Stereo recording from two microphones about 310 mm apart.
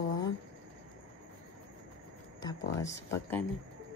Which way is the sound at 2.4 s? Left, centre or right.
Centre.